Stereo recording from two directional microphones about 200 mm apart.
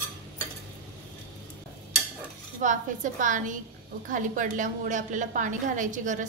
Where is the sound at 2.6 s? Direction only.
40° right (ahead or behind).